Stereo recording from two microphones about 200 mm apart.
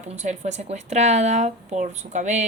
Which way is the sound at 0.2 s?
35° right (ahead or behind).